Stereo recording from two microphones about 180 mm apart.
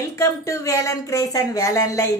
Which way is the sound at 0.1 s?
15° left (ahead or behind).